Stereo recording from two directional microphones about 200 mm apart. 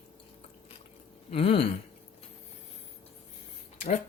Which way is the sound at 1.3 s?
30° left (ahead or behind).